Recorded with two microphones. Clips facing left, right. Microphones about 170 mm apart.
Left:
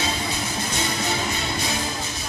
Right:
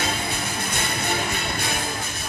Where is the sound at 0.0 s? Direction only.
55° right (ahead or behind).